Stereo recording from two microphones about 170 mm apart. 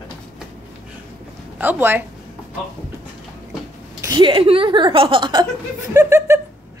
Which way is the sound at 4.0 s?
25° right (ahead or behind).